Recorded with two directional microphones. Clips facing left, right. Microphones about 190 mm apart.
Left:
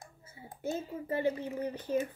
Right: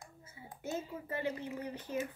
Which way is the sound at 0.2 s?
30° left (ahead or behind).